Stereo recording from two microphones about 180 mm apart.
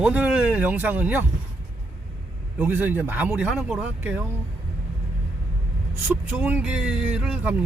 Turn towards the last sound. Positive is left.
turn(degrees=-5)  # may be behind; listen again after turning